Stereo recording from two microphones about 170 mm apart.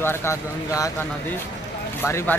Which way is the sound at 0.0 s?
15° left (ahead or behind).